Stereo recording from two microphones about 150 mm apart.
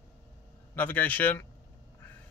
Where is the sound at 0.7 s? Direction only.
10° left (ahead or behind).